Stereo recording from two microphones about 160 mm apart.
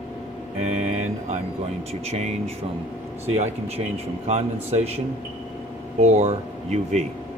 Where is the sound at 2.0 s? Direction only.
40° right (ahead or behind).